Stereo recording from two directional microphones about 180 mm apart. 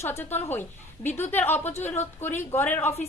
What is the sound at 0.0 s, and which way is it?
A woman's voice, 15° left (ahead or behind).